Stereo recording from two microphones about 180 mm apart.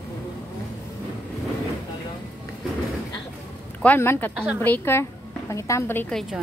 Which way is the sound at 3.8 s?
10° left (ahead or behind).